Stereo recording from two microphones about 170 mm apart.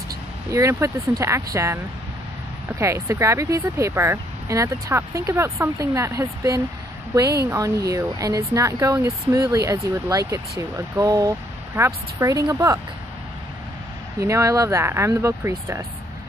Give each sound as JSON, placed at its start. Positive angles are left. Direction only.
{"t": 0.5, "sound": "speech", "side_deg": -15}
{"t": 14.2, "sound": "speech", "side_deg": -20}